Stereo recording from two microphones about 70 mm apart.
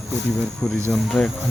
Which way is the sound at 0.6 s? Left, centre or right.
Centre.